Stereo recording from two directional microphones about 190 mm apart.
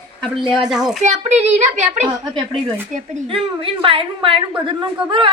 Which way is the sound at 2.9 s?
40° right (ahead or behind).